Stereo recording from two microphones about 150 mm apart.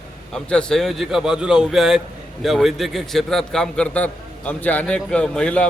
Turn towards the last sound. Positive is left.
turn(degrees=5)  # may be behind; listen again after turning